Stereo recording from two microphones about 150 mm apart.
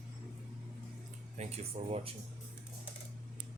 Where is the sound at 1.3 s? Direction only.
45° right (ahead or behind).